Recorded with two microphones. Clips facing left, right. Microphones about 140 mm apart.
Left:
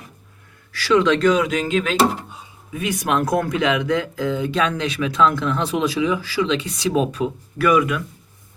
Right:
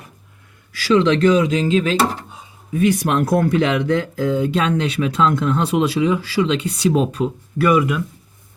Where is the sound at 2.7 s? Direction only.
35° right (ahead or behind).